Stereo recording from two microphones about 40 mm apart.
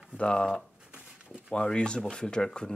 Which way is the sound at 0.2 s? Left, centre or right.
Left.